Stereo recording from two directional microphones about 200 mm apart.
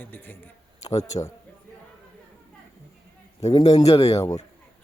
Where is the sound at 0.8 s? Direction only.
30° left (ahead or behind).